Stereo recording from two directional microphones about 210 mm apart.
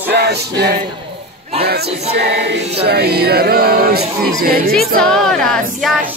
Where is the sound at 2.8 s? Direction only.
50° right (ahead or behind).